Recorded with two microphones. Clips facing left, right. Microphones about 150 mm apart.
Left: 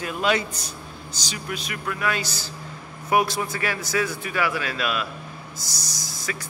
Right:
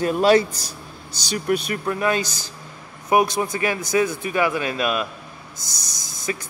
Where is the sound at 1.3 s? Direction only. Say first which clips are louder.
Right 11 dB; 45° right (ahead or behind).